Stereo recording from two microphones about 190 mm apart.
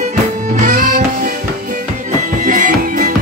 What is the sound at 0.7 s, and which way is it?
Music, 45° right (ahead or behind).